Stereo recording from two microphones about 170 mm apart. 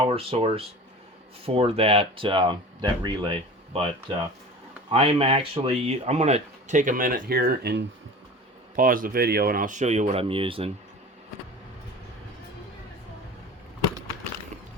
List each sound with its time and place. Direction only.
0.1 s speech: 35° right (ahead or behind)
4.9 s speech: 35° right (ahead or behind); by 7.9 s 75° right (ahead or behind)
8.7 s speech: 55° right (ahead or behind); by 10.7 s 30° right (ahead or behind)